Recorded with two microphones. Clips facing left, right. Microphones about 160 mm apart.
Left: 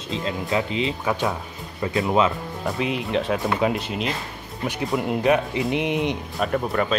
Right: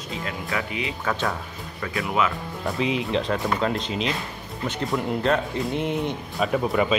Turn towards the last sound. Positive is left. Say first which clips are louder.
# right 1 dB
turn(degrees=0)  # may be behind; listen again after turning